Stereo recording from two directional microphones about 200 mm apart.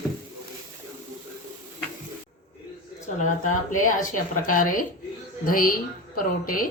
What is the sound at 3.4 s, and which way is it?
A woman's voice, 40° left (ahead or behind).